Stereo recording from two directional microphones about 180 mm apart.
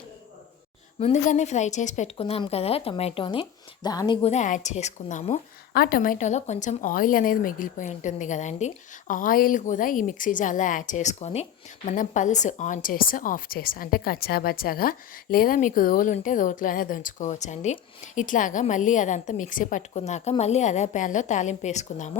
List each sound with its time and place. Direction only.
0.9 s a woman's voice: 40° left (ahead or behind)
4.3 s a woman's voice: 45° left (ahead or behind)
5.7 s a woman's voice: 55° left (ahead or behind)